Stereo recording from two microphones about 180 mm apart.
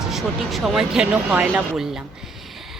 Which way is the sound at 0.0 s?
Centre (ahead or behind).